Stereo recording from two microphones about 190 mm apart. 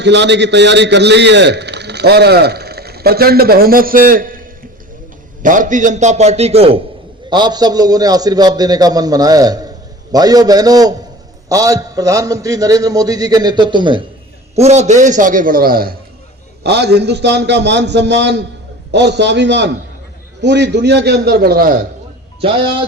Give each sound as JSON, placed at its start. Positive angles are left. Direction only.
{"t": 0.0, "sound": "a man's voice", "side_deg": -65}
{"t": 14.5, "sound": "a man's voice", "side_deg": -35}
{"t": 16.6, "sound": "a man's voice", "side_deg": -60}
{"t": 22.4, "sound": "a man's voice", "side_deg": -30}